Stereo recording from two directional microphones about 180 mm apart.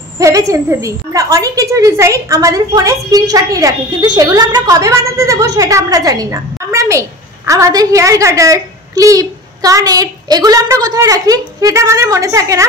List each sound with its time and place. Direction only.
0.2 s a woman's voice: 20° right (ahead or behind)